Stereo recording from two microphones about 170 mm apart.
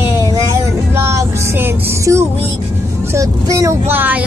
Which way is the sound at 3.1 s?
20° right (ahead or behind).